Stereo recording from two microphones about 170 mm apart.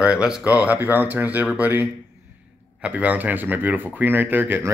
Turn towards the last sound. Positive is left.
turn(degrees=-10)  # may be behind; listen again after turning